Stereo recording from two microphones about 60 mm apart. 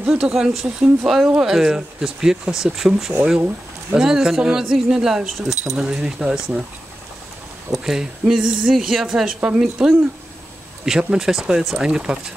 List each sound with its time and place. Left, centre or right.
0.1 s a woman's voice: centre
3.3 s speech: right
4.0 s a woman's voice: centre
7.8 s a woman's voice: centre